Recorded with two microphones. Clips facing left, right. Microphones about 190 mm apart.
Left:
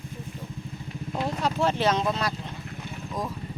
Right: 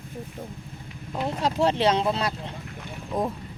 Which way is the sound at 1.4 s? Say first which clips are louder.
Right 3 dB; 30° right (ahead or behind).